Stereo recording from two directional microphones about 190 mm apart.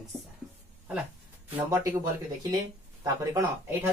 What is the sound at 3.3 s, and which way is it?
Speech, 10° right (ahead or behind).